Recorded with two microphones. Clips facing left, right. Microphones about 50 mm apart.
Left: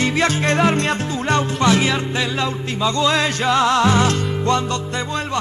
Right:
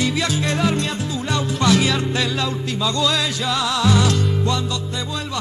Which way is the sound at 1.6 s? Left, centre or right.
Left.